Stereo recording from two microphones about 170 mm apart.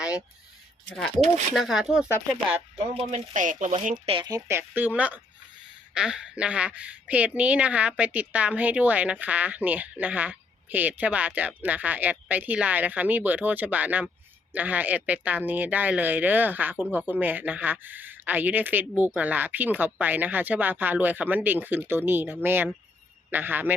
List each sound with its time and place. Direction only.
0.9 s speech: 5° left (ahead or behind)
2.7 s speech: 40° right (ahead or behind)
4.1 s speech: 25° right (ahead or behind)